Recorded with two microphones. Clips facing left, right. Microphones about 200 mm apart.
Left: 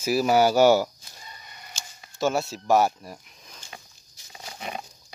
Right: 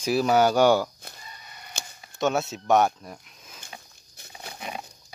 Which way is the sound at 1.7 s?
60° right (ahead or behind).